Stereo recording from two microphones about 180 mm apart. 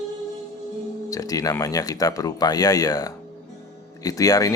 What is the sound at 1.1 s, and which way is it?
Speech, 20° left (ahead or behind).